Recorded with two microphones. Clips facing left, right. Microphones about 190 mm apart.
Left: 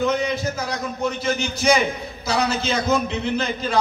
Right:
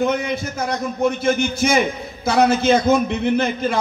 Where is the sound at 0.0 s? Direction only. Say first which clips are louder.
Right 1 dB; 55° right (ahead or behind).